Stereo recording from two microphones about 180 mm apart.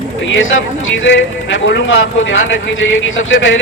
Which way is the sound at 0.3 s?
90° left.